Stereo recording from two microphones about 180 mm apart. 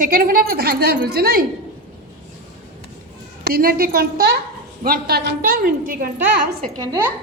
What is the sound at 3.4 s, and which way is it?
A woman's voice, 55° right (ahead or behind).